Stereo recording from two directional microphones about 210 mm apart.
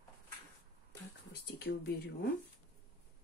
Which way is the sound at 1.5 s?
50° left (ahead or behind).